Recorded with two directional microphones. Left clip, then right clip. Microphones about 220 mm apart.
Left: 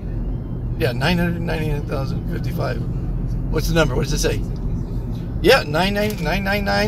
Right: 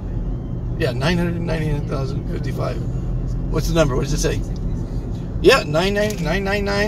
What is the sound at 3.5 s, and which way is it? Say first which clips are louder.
Speech: even; 20° left (ahead or behind).